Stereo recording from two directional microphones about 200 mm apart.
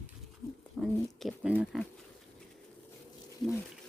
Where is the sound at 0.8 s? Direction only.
Centre (ahead or behind).